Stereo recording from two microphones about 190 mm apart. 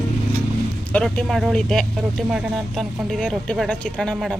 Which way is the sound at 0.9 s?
5° left (ahead or behind).